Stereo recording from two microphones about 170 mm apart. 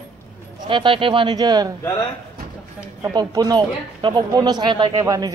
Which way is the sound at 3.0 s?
20° right (ahead or behind).